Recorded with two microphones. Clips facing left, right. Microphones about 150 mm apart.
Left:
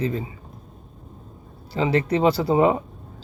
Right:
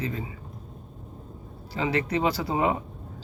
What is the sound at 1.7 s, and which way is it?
Speech, 30° left (ahead or behind).